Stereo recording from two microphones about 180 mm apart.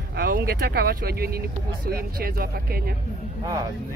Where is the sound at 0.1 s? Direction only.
55° right (ahead or behind).